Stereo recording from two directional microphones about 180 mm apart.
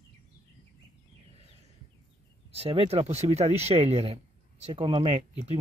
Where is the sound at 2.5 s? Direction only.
35° right (ahead or behind).